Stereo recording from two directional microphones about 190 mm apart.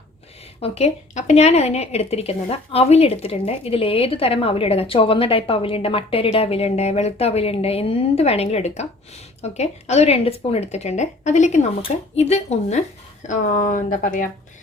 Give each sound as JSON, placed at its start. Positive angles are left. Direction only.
{"t": 0.6, "sound": "a woman's voice", "side_deg": 35}